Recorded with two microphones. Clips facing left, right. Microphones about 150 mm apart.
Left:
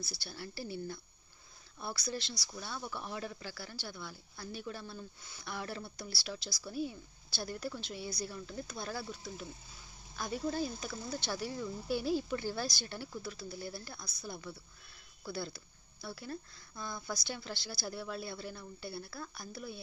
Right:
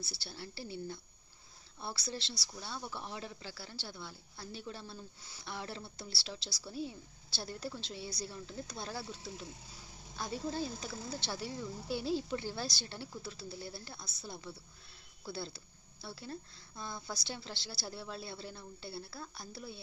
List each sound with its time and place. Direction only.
0.0 s speech: 25° right (ahead or behind)